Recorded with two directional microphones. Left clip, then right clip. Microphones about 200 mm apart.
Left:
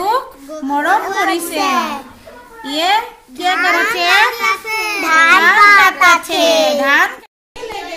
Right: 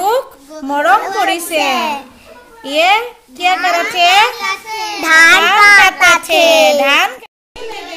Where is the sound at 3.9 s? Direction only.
40° right (ahead or behind).